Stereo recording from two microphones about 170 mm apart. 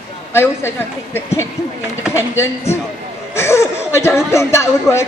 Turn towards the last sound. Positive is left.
turn(degrees=15)  # may be behind; listen again after turning